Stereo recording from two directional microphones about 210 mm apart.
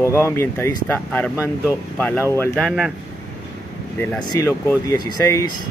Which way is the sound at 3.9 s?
10° left (ahead or behind).